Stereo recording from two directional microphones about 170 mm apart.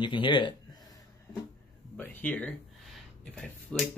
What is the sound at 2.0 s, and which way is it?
Speech, 10° left (ahead or behind).